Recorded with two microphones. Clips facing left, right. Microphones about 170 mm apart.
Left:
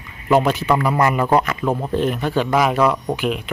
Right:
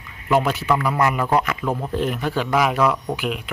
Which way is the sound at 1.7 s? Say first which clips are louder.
Left 3 dB; 20° left (ahead or behind).